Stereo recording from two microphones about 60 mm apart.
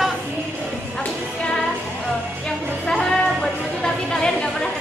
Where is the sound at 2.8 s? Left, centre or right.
Centre.